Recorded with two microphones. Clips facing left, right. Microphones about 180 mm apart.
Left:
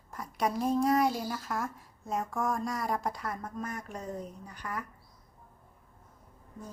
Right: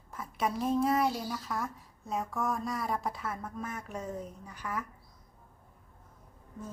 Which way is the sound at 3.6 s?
40° left (ahead or behind).